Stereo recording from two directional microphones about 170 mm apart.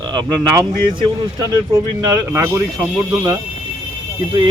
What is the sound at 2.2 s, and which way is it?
Speech, 15° right (ahead or behind).